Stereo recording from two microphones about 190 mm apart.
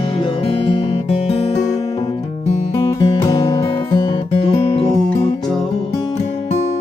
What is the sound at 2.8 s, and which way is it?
Music, 20° left (ahead or behind).